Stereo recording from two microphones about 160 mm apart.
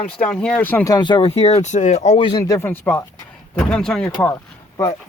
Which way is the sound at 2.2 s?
25° left (ahead or behind).